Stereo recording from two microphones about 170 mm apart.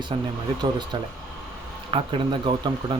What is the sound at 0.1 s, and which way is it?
Speech, 30° right (ahead or behind).